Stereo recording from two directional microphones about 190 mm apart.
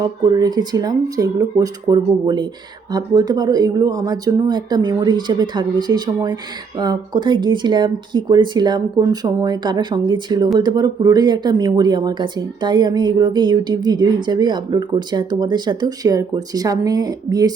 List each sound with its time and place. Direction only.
0.0 s speech: 20° right (ahead or behind)